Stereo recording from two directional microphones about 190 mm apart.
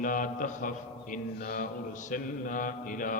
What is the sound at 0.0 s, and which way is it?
A man's voice, 45° left (ahead or behind).